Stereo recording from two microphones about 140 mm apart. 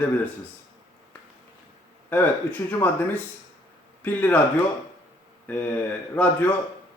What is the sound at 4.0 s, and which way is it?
Speech, 10° left (ahead or behind).